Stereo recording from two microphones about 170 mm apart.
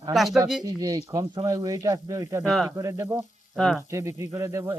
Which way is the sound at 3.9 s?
15° right (ahead or behind).